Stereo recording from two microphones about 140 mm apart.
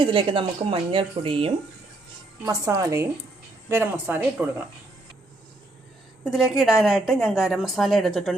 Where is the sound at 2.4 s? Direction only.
20° right (ahead or behind).